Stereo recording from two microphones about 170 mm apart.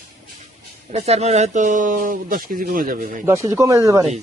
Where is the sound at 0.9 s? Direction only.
40° right (ahead or behind).